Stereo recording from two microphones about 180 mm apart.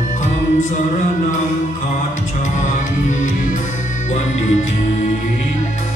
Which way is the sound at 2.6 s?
45° left (ahead or behind).